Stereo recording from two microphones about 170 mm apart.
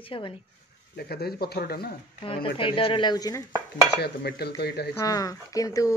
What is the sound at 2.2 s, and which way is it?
Speech, 30° left (ahead or behind).